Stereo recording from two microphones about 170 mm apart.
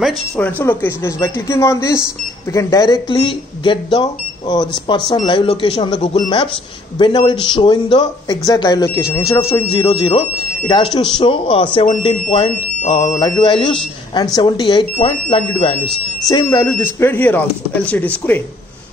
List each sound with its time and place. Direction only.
0.4 s speech: 10° left (ahead or behind)
9.8 s speech: 30° left (ahead or behind)
16.3 s speech: 20° left (ahead or behind)